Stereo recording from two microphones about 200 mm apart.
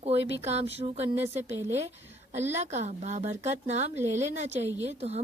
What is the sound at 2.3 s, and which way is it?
Speech, 35° right (ahead or behind).